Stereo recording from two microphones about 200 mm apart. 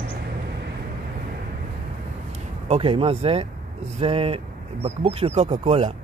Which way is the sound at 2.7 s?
30° right (ahead or behind).